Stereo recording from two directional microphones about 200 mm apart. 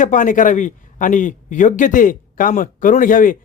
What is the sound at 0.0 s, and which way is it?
A man's voice, 40° left (ahead or behind).